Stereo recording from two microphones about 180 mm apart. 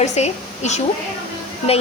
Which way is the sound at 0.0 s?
40° left (ahead or behind).